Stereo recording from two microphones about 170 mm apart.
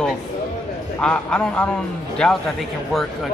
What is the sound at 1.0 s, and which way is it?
Speech, 5° left (ahead or behind).